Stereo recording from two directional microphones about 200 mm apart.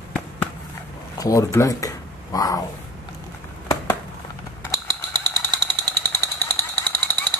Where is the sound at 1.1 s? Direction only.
15° left (ahead or behind).